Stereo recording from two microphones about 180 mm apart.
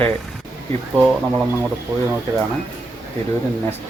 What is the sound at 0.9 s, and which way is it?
Speech, centre (ahead or behind).